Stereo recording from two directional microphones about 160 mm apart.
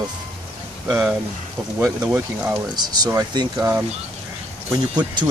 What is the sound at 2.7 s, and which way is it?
Speech, 25° right (ahead or behind).